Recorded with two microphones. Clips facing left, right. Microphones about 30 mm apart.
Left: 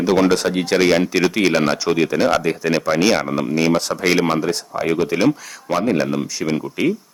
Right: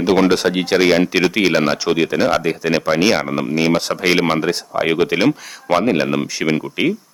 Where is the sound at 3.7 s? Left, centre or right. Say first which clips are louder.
Right 2 dB; right.